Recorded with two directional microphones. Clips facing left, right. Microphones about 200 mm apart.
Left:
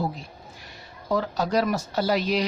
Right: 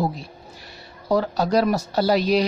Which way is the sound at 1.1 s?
35° right (ahead or behind).